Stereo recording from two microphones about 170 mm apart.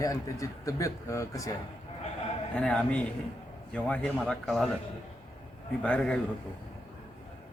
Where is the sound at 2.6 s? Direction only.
5° left (ahead or behind).